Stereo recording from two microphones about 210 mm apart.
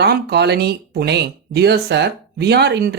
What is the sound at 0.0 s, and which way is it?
Speech, 50° right (ahead or behind).